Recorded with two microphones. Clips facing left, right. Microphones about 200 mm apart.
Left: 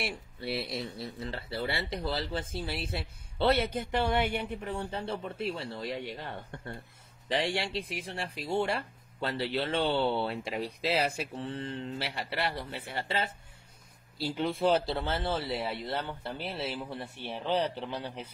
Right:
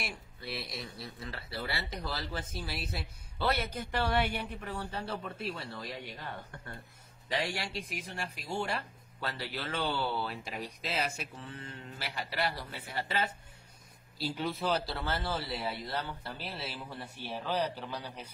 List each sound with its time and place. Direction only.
0.0 s speech: 30° left (ahead or behind)
7.2 s speech: 30° left (ahead or behind)